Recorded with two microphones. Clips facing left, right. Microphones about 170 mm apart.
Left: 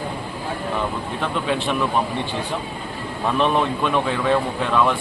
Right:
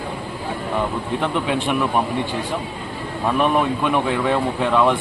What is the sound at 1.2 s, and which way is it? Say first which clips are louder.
Speech: even; 15° right (ahead or behind).